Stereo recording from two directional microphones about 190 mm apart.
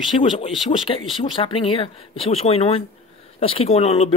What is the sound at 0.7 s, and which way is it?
Speech, 30° left (ahead or behind).